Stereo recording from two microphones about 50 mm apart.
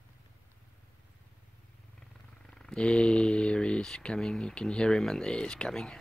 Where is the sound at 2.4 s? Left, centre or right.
Centre.